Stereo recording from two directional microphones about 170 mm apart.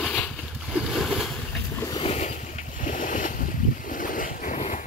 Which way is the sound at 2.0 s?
40° left (ahead or behind).